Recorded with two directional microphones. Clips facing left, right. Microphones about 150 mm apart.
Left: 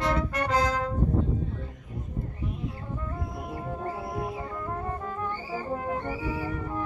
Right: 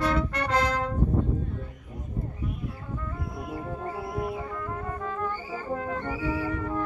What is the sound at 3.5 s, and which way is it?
Music, 25° left (ahead or behind).